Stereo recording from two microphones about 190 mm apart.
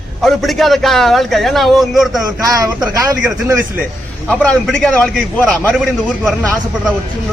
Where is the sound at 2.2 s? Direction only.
20° right (ahead or behind).